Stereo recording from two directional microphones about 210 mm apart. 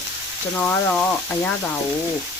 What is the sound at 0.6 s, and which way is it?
Speech, 5° left (ahead or behind).